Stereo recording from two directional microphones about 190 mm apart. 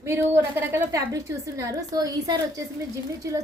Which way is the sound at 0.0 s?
15° right (ahead or behind).